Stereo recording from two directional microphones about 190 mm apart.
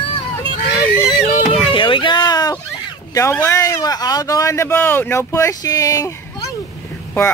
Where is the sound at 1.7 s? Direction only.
25° left (ahead or behind).